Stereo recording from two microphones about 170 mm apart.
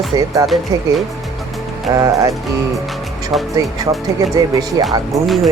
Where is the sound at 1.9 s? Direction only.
20° right (ahead or behind).